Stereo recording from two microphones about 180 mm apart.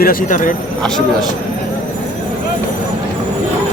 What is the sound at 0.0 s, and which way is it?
Speech, 50° left (ahead or behind).